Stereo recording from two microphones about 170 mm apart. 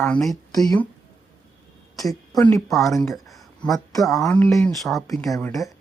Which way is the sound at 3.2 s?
Centre (ahead or behind).